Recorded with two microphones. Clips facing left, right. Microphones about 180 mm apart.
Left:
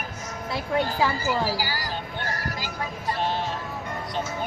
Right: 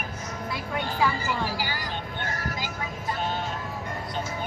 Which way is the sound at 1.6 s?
40° left (ahead or behind).